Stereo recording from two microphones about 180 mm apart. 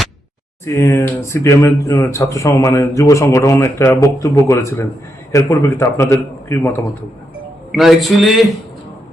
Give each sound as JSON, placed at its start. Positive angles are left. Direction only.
{"t": 0.6, "sound": "speech", "side_deg": 15}
{"t": 7.7, "sound": "a man's voice", "side_deg": 0}